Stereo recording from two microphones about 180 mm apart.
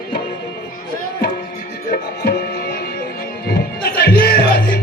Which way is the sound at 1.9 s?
60° left (ahead or behind).